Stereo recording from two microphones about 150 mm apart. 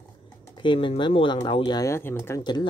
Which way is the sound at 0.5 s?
35° left (ahead or behind).